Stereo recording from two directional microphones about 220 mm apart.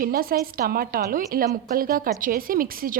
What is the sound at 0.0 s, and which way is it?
A woman's voice, 40° right (ahead or behind).